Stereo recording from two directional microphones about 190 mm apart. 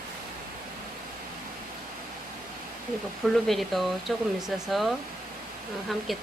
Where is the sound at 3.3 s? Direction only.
Centre (ahead or behind).